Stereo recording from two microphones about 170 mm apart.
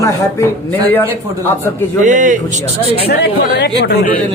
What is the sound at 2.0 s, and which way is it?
Speech, 50° right (ahead or behind).